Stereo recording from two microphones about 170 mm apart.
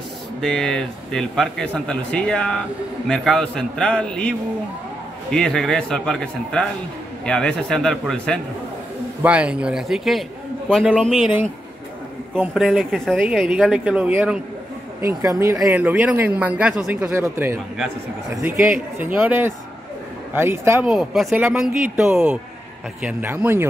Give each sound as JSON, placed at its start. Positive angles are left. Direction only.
{"t": 0.4, "sound": "speech", "side_deg": 5}
{"t": 9.2, "sound": "speech", "side_deg": -5}
{"t": 12.4, "sound": "speech", "side_deg": -5}
{"t": 20.8, "sound": "speech", "side_deg": 0}